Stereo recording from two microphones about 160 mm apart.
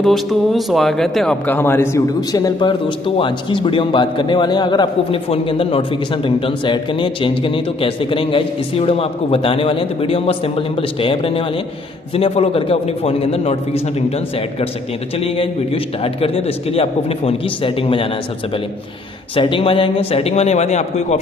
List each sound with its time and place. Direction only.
0.0 s a man's voice: centre (ahead or behind); by 18.1 s 35° left (ahead or behind)
19.3 s a man's voice: 35° left (ahead or behind)